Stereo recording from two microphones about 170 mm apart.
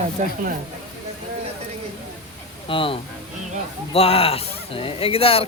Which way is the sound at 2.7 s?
30° left (ahead or behind).